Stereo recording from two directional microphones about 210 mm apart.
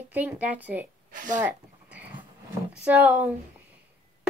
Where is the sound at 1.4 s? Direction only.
5° right (ahead or behind).